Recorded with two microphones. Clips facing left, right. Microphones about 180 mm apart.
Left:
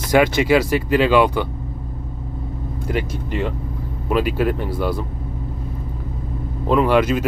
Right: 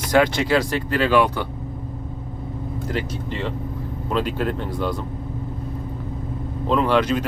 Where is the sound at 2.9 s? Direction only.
10° left (ahead or behind).